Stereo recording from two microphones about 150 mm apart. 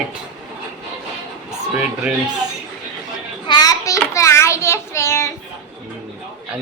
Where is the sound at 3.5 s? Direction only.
25° left (ahead or behind).